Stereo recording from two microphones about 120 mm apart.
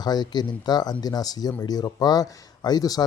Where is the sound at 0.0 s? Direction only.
35° left (ahead or behind).